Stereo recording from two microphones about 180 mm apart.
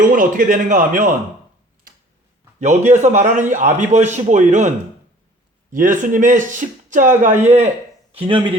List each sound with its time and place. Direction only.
0.0 s a man's voice: 45° right (ahead or behind)
2.6 s a man's voice: 40° right (ahead or behind)
5.7 s a man's voice: 45° right (ahead or behind); by 8.5 s 30° right (ahead or behind)